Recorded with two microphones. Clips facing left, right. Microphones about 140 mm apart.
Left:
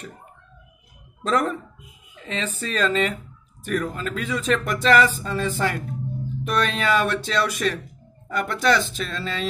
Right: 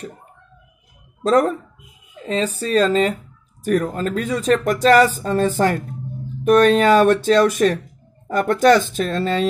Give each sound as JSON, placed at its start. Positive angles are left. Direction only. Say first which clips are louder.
{"t": 1.2, "sound": "speech", "louder": "right 6 dB", "side_deg": -35}